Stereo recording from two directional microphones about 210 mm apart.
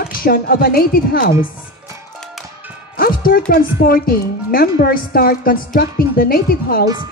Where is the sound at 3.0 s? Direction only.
45° left (ahead or behind).